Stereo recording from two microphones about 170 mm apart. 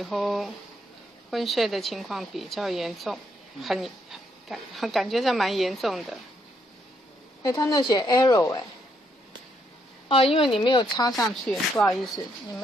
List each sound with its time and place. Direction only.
0.0 s a woman's voice: centre (ahead or behind)
7.4 s a woman's voice: 20° left (ahead or behind)
10.0 s a woman's voice: 30° left (ahead or behind)
11.2 s a woman's voice: centre (ahead or behind)